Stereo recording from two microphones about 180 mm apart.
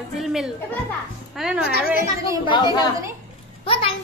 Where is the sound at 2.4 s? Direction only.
25° left (ahead or behind).